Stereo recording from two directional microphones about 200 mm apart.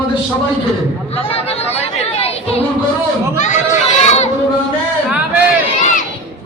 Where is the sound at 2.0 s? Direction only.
30° left (ahead or behind).